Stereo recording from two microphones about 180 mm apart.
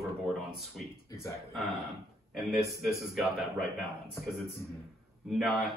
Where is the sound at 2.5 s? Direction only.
Centre (ahead or behind).